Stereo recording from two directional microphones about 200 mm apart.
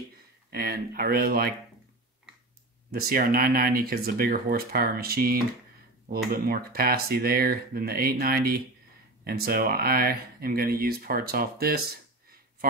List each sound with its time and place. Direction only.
0.5 s speech: 50° right (ahead or behind)
2.9 s speech: 50° right (ahead or behind)